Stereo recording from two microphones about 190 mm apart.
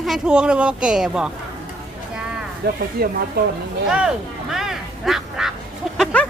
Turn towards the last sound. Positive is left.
turn(degrees=5)  # may be behind; listen again after turning